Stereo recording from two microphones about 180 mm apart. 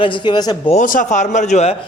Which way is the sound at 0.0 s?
25° left (ahead or behind).